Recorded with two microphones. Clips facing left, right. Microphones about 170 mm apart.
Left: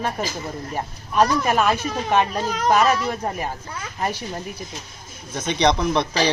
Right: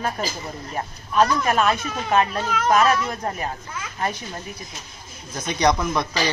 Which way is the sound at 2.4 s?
35° left (ahead or behind).